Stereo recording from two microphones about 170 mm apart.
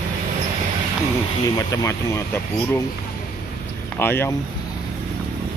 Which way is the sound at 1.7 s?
20° left (ahead or behind).